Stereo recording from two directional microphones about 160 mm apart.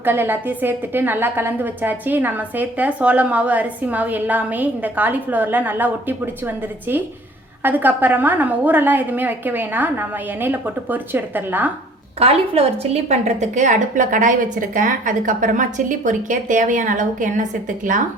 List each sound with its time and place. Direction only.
0.0 s a woman's voice: 15° right (ahead or behind)
12.2 s a woman's voice: 40° right (ahead or behind); by 18.0 s 55° right (ahead or behind)